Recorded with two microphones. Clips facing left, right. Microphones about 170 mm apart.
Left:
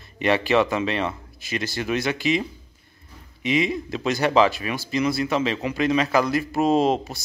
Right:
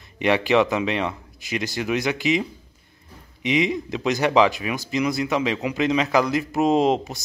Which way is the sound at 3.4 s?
15° right (ahead or behind).